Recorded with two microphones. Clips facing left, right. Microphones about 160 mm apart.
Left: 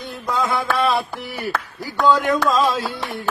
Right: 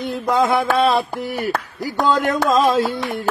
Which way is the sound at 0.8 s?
20° right (ahead or behind).